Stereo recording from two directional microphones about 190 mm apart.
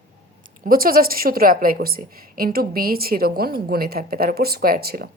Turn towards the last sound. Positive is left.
turn(degrees=-55)  # may be behind; listen again after turning